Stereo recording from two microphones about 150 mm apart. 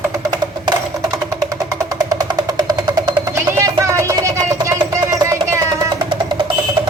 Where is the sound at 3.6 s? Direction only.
20° right (ahead or behind).